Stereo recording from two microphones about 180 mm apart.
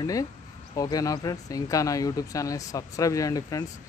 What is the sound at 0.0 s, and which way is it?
Speech, 20° left (ahead or behind).